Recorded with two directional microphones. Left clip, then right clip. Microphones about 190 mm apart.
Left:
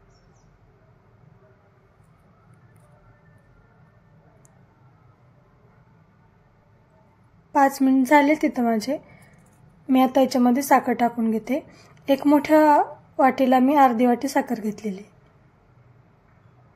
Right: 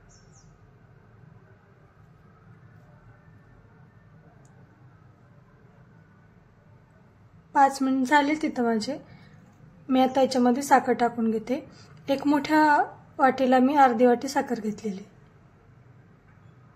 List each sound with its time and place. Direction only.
7.5 s a woman's voice: 35° left (ahead or behind)